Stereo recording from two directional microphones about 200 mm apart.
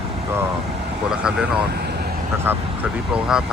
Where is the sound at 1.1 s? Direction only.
5° right (ahead or behind).